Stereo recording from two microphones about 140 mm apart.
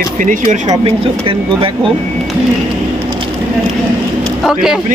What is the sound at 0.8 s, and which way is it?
Speech, 40° right (ahead or behind).